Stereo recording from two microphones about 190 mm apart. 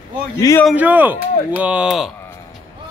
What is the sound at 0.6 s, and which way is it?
Speech, 5° right (ahead or behind).